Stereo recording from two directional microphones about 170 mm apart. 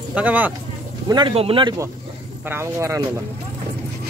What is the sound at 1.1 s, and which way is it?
Speech, 30° right (ahead or behind).